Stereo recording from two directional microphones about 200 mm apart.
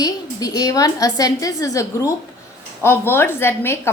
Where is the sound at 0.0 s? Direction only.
20° left (ahead or behind).